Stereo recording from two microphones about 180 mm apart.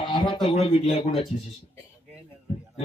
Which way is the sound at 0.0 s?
25° left (ahead or behind).